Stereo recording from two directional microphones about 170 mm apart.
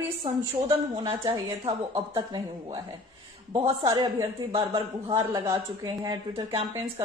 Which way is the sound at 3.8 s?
25° right (ahead or behind).